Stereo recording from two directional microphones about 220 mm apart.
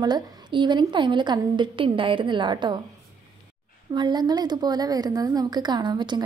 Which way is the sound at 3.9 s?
20° right (ahead or behind).